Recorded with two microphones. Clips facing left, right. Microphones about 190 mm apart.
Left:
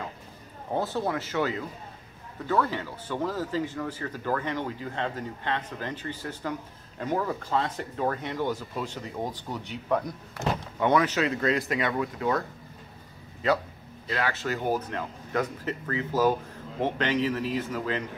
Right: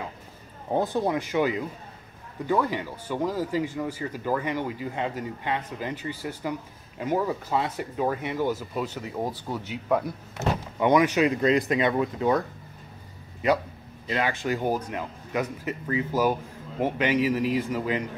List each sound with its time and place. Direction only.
0.7 s speech: 15° right (ahead or behind)
14.0 s speech: 15° right (ahead or behind)